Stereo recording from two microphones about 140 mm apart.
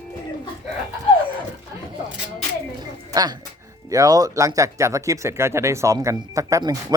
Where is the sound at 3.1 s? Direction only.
30° right (ahead or behind).